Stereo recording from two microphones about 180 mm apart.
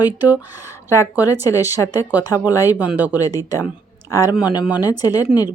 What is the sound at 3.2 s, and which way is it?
Speech, 20° left (ahead or behind).